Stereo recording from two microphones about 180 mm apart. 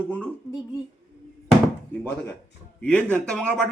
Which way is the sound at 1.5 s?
10° left (ahead or behind).